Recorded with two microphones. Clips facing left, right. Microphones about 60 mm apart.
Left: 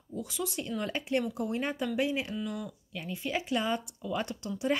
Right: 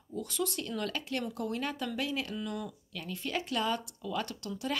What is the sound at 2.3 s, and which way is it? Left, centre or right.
Speech, centre.